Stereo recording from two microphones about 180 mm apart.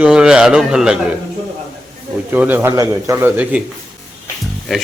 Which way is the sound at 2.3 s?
10° right (ahead or behind).